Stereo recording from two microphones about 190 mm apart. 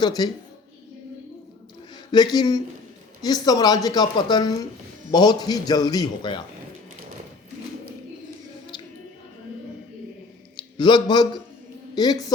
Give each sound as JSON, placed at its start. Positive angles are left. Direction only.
{"t": 0.0, "sound": "a woman's voice", "side_deg": 20}
{"t": 2.1, "sound": "a woman's voice", "side_deg": 20}
{"t": 10.6, "sound": "a man's voice", "side_deg": 25}